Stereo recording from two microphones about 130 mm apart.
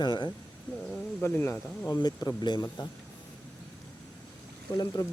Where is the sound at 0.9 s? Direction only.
20° left (ahead or behind).